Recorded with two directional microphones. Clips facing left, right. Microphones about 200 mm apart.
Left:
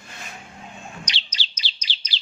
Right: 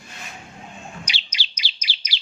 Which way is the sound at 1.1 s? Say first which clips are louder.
Right 1 dB; 10° right (ahead or behind).